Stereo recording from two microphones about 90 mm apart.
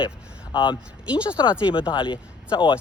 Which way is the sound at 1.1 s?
15° right (ahead or behind).